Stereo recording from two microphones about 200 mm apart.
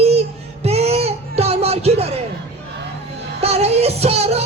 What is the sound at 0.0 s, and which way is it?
Child singing, 30° right (ahead or behind).